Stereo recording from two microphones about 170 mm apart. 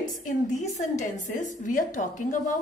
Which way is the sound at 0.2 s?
45° left (ahead or behind).